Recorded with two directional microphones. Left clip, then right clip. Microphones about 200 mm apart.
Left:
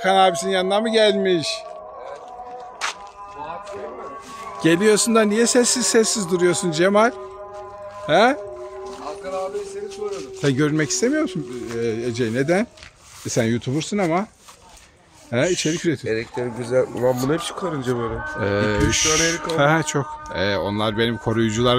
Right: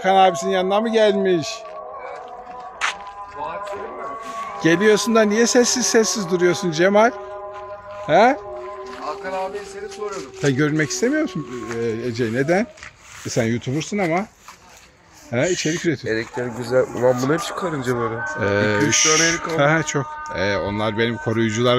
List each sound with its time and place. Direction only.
0.0 s a man's voice: 5° right (ahead or behind)
4.6 s a man's voice: 5° left (ahead or behind)
10.4 s a man's voice: 5° left (ahead or behind)
13.3 s speech: 15° left (ahead or behind)
15.3 s speech: 10° left (ahead or behind)